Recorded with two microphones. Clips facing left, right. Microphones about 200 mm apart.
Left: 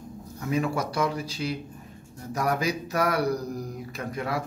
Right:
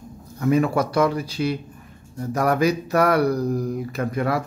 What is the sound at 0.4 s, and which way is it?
Speech, 60° right (ahead or behind).